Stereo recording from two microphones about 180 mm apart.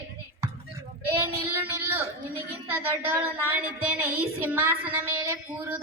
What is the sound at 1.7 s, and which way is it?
Speech, 10° right (ahead or behind).